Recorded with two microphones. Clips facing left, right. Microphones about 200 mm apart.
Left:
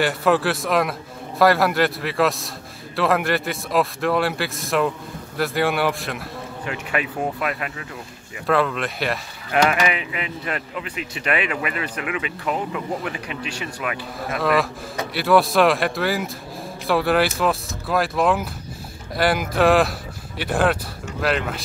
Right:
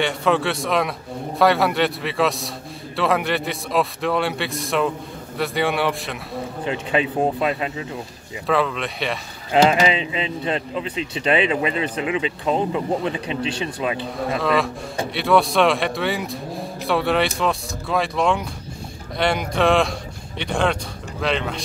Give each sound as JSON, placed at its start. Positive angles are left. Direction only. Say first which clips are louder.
{"t": 0.0, "sound": "speech", "louder": "left 1 dB", "side_deg": 5}
{"t": 6.6, "sound": "speech", "louder": "right 4 dB", "side_deg": -25}
{"t": 8.5, "sound": "speech", "louder": "left 1 dB", "side_deg": 0}
{"t": 9.5, "sound": "speech", "louder": "right 3 dB", "side_deg": -25}
{"t": 14.4, "sound": "speech", "louder": "left 2 dB", "side_deg": 0}